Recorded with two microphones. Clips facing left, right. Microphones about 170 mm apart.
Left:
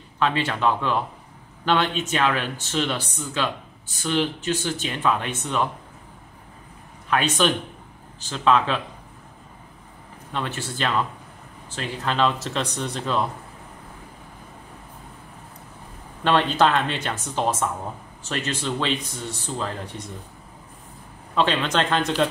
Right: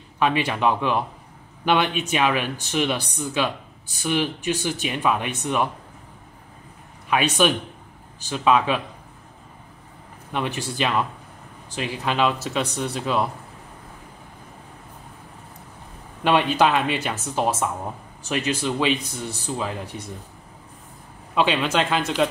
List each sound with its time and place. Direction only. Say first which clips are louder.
0.2 s speech: right 1 dB; 10° right (ahead or behind)
7.1 s speech: right 1 dB; 10° right (ahead or behind)
10.3 s speech: right 3 dB; 15° right (ahead or behind)
16.3 s speech: right 1 dB; 10° right (ahead or behind)
21.4 s speech: right 1 dB; 10° right (ahead or behind)